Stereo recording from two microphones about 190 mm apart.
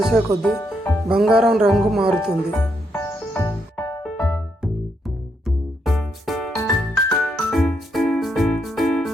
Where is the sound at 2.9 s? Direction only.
15° left (ahead or behind).